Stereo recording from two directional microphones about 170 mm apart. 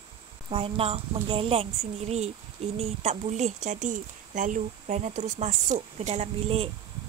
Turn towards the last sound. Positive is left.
turn(degrees=-35)  # may be behind; listen again after turning